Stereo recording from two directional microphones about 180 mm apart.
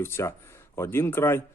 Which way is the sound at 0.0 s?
15° left (ahead or behind).